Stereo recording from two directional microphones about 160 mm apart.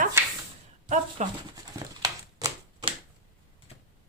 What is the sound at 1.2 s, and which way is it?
Speech, 45° right (ahead or behind).